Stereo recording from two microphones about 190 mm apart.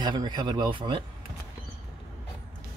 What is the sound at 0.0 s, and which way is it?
Speech, 25° right (ahead or behind).